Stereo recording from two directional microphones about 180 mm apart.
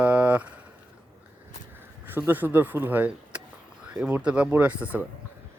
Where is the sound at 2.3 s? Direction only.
10° right (ahead or behind).